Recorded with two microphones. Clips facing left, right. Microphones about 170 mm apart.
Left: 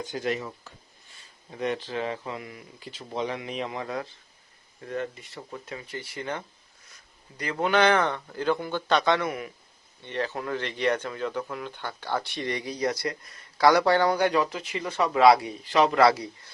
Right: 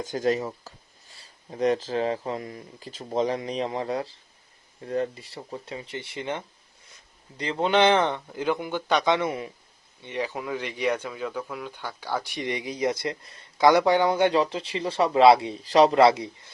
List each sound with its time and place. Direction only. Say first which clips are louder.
0.0 s speech: right 5 dB; 45° right (ahead or behind); by 9.5 s 25° right (ahead or behind)
10.0 s speech: even; 15° right (ahead or behind)